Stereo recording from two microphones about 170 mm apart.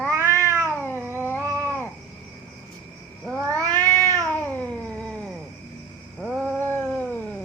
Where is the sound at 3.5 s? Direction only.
10° left (ahead or behind).